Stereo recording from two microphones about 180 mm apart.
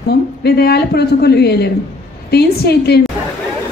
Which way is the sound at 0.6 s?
65° left (ahead or behind).